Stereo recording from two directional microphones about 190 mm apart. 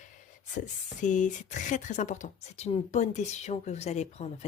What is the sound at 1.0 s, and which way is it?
Speech, 40° left (ahead or behind).